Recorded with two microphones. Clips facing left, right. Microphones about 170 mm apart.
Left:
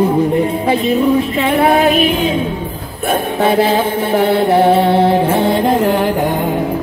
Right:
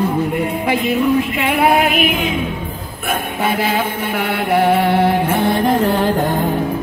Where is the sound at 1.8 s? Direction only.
30° left (ahead or behind).